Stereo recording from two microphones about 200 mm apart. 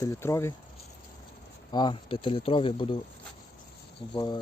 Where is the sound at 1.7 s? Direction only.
25° left (ahead or behind).